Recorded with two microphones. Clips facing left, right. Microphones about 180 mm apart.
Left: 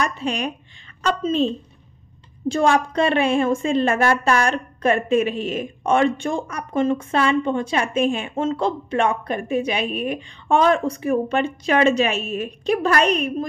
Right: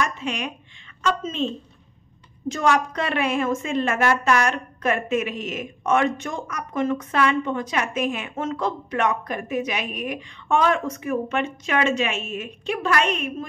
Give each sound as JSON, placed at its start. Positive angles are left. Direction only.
{"t": 0.0, "sound": "a woman's voice", "side_deg": 35}